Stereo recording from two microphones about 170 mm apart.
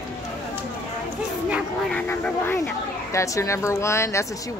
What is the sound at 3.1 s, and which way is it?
A woman's voice, 20° left (ahead or behind).